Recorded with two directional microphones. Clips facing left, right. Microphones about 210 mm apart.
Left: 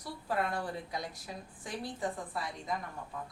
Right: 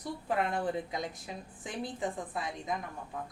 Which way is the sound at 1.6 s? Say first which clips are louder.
Right 1 dB; 20° right (ahead or behind).